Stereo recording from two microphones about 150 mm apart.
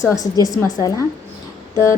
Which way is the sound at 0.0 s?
20° left (ahead or behind).